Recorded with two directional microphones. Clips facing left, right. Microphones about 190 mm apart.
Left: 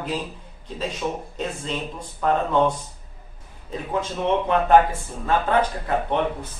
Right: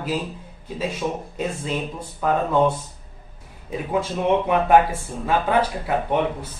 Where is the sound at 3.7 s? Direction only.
10° right (ahead or behind).